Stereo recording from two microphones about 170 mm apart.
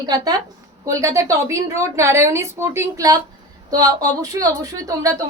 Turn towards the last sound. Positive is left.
turn(degrees=-20)  # may be behind; listen again after turning